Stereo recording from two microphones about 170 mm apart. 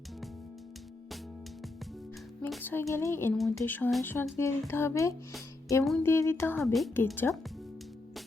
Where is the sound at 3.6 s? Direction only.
10° left (ahead or behind).